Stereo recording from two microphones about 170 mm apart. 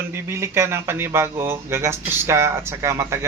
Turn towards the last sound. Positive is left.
turn(degrees=-15)  # may be behind; listen again after turning